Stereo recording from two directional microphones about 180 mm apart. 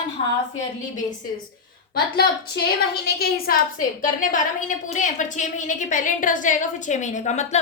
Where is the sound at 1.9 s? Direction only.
60° left (ahead or behind).